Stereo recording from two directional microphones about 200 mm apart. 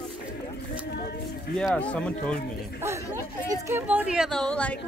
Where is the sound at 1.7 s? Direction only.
5° left (ahead or behind).